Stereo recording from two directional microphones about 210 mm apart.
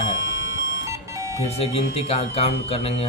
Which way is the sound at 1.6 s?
30° left (ahead or behind).